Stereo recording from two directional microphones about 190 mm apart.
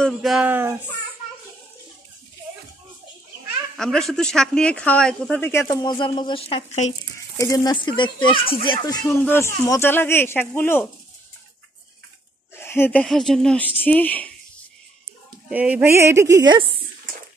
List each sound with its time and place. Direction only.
0.0 s speech: centre (ahead or behind)
3.7 s speech: centre (ahead or behind)
5.7 s speech: 20° left (ahead or behind)
7.3 s speech: 20° left (ahead or behind)
9.0 s speech: 10° left (ahead or behind)
12.5 s speech: 10° left (ahead or behind)
15.5 s speech: 10° right (ahead or behind); by 16.8 s 25° right (ahead or behind)